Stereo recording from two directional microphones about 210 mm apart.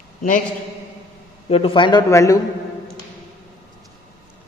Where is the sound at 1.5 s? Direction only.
25° left (ahead or behind).